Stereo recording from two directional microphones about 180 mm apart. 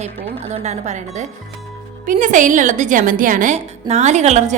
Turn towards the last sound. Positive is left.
turn(degrees=-40)  # may be behind; listen again after turning